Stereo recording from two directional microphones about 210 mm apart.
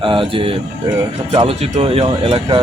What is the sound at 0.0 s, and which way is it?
Speech, 25° right (ahead or behind).